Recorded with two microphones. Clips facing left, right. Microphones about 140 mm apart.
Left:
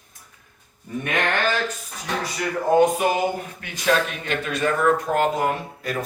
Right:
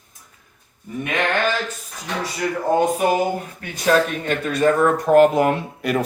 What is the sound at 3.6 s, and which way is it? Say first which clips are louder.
Speech: right 4 dB; 40° right (ahead or behind).